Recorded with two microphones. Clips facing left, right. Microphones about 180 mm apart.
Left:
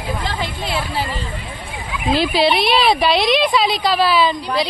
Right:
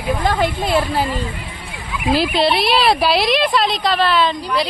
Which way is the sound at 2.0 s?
Centre (ahead or behind).